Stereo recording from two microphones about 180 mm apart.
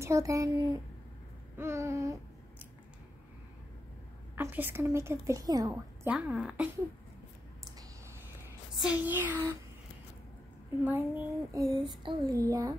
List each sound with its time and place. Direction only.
0.0 s a woman's voice: 15° right (ahead or behind)
4.4 s a woman's voice: 10° right (ahead or behind)
6.0 s a woman's voice: 5° right (ahead or behind)
8.8 s a woman's voice: 10° right (ahead or behind)
10.9 s child singing: 10° right (ahead or behind)